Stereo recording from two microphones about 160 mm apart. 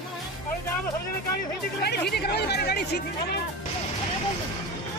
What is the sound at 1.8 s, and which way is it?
Speech, 90° left.